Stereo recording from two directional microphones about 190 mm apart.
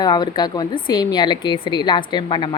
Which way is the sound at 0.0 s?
20° left (ahead or behind).